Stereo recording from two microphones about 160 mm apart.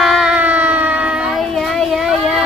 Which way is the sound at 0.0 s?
Centre (ahead or behind).